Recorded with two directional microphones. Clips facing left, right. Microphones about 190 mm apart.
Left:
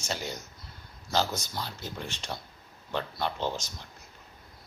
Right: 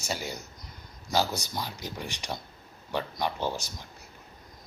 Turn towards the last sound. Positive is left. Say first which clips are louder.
# right 1 dB
turn(degrees=-10)  # may be behind; listen again after turning